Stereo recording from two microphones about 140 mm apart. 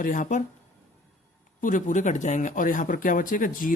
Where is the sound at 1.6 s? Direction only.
65° left (ahead or behind).